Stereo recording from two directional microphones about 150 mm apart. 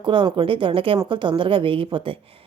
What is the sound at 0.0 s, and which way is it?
A woman's voice, 35° right (ahead or behind).